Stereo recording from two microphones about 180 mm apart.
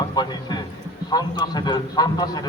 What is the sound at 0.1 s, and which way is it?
A man's voice, 25° left (ahead or behind).